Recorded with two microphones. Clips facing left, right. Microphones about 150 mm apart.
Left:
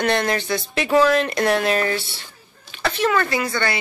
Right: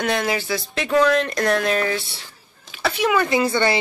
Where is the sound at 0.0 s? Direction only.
5° right (ahead or behind).